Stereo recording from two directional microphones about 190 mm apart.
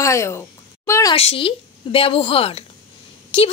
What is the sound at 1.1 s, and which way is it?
A woman's voice, 30° left (ahead or behind).